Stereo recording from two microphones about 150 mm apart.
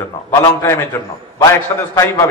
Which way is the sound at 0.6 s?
15° left (ahead or behind).